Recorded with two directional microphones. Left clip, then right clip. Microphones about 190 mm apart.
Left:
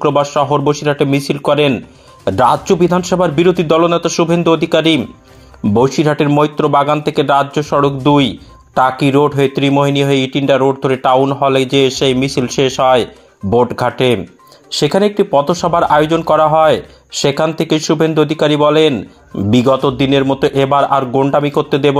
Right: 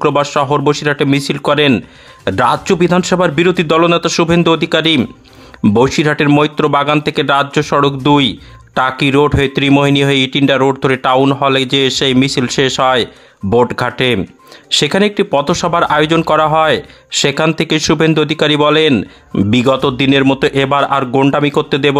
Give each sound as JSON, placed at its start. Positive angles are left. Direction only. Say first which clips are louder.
{"t": 0.0, "sound": "speech", "louder": "even", "side_deg": -15}
{"t": 1.1, "sound": "speech", "louder": "right 1 dB", "side_deg": -55}
{"t": 1.4, "sound": "speech", "louder": "right 1 dB", "side_deg": -15}
{"t": 11.8, "sound": "speech", "louder": "even", "side_deg": -55}
{"t": 12.8, "sound": "speech", "louder": "left 1 dB", "side_deg": -15}